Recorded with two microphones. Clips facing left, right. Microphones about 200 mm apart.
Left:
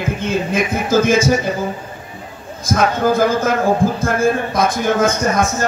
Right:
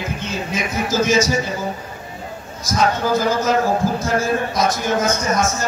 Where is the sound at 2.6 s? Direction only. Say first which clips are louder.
Left 3 dB; 55° left (ahead or behind).